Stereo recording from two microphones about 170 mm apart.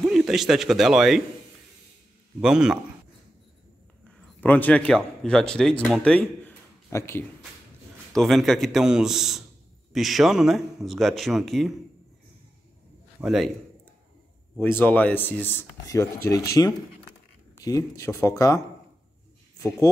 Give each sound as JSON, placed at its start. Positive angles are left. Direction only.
{"t": 0.0, "sound": "a man's voice", "side_deg": 0}
{"t": 2.4, "sound": "a man's voice", "side_deg": -5}
{"t": 4.4, "sound": "speech", "side_deg": 10}
{"t": 8.1, "sound": "a man's voice", "side_deg": 0}
{"t": 13.2, "sound": "a man's voice", "side_deg": 0}
{"t": 14.6, "sound": "speech", "side_deg": 10}